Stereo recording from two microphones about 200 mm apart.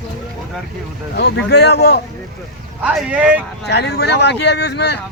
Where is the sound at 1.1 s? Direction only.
60° left (ahead or behind).